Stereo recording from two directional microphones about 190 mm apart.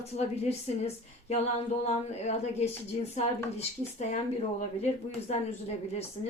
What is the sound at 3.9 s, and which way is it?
Speech, 35° left (ahead or behind).